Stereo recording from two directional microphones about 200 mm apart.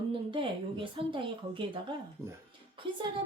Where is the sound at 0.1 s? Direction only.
25° right (ahead or behind).